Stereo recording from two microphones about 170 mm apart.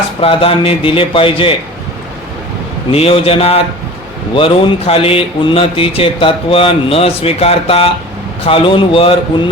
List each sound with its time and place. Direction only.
0.2 s speech: 30° left (ahead or behind)
2.9 s speech: 35° left (ahead or behind)